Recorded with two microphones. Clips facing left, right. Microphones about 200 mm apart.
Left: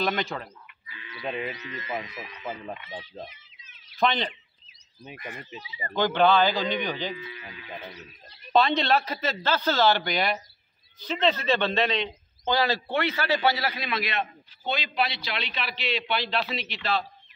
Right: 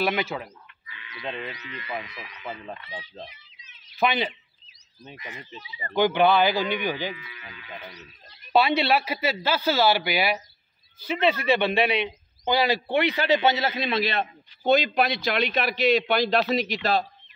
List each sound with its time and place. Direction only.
0.0 s a man's voice: 5° right (ahead or behind)
1.2 s speech: 5° left (ahead or behind)
1.5 s speech: 25° left (ahead or behind)
2.4 s speech: 5° left (ahead or behind)
4.0 s a man's voice: 5° right (ahead or behind)
5.1 s speech: 50° left (ahead or behind)
5.9 s a man's voice: 10° right (ahead or behind)
7.2 s speech: 25° left (ahead or behind)
8.5 s a man's voice: 10° right (ahead or behind); by 14.2 s 30° right (ahead or behind)
14.6 s a man's voice: 45° right (ahead or behind)